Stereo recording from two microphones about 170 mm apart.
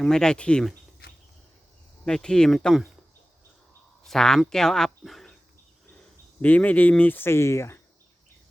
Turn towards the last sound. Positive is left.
turn(degrees=15)  # may be behind; listen again after turning